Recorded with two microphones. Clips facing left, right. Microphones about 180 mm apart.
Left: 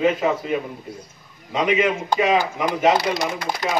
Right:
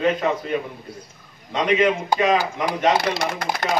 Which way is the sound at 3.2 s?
60° right (ahead or behind).